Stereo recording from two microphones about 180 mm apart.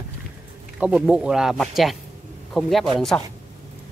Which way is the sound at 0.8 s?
5° right (ahead or behind).